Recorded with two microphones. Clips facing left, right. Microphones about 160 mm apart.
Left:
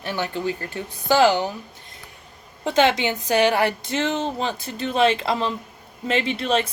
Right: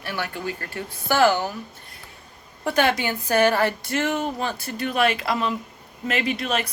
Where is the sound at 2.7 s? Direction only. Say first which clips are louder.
Left 2 dB; 20° left (ahead or behind).